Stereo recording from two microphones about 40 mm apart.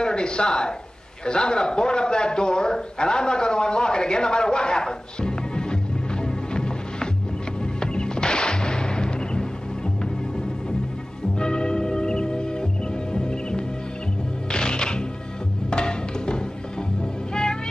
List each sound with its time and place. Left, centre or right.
0.0 s a man's voice: left
6.2 s music: centre
11.3 s music: centre